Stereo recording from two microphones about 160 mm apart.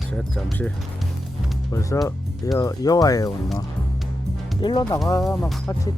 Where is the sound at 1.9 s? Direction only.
15° left (ahead or behind).